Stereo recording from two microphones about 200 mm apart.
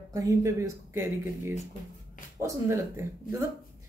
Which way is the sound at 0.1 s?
15° right (ahead or behind).